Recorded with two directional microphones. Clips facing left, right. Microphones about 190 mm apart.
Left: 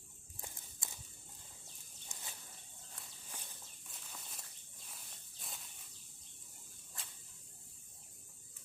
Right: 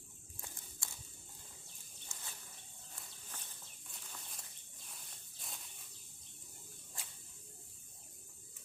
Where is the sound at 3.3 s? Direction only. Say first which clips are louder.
Left 2 dB; 15° left (ahead or behind).